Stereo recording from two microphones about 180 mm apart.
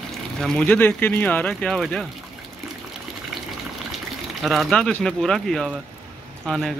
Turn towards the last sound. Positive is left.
turn(degrees=0)  # may be behind; listen again after turning